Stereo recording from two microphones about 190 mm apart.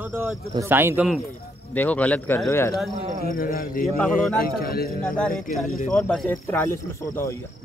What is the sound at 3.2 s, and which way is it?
Speech, 50° left (ahead or behind).